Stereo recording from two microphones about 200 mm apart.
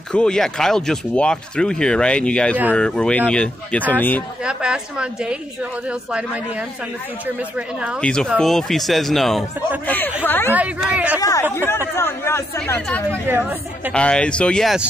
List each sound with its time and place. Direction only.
0.1 s speech: 5° left (ahead or behind)
4.5 s speech: 5° right (ahead or behind)
10.5 s speech: 5° right (ahead or behind)
11.1 s speech: 15° left (ahead or behind)
13.3 s speech: 10° right (ahead or behind)
13.9 s speech: 5° left (ahead or behind)